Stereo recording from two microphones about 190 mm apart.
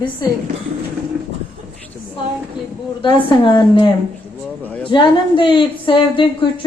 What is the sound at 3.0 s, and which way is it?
Speech, 25° left (ahead or behind).